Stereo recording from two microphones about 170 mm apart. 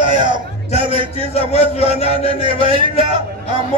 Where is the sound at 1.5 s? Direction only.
35° left (ahead or behind).